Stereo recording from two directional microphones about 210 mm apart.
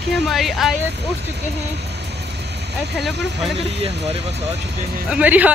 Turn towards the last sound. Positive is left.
turn(degrees=-5)  # may be behind; listen again after turning